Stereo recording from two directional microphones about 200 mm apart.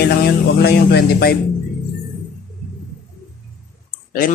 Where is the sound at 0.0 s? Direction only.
50° left (ahead or behind).